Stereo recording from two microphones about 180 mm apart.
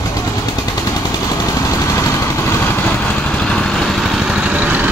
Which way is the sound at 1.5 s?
20° left (ahead or behind).